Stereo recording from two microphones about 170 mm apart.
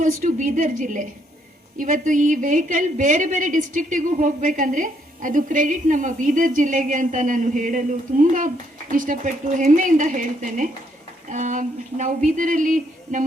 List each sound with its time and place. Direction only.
0.0 s a woman's voice: 50° right (ahead or behind)